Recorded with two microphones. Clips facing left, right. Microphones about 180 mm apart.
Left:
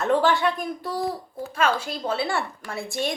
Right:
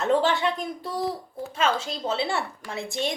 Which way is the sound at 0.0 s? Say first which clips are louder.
Left 1 dB; 20° right (ahead or behind).